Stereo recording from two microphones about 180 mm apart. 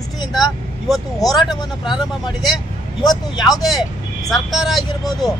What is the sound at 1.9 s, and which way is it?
Speech, 25° left (ahead or behind).